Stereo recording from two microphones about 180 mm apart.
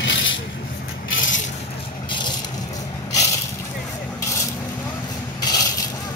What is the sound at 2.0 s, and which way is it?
Vehicle, 25° left (ahead or behind).